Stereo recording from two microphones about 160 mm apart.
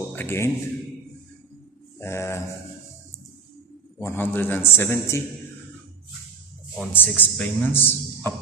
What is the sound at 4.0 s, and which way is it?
A man's voice, 15° left (ahead or behind).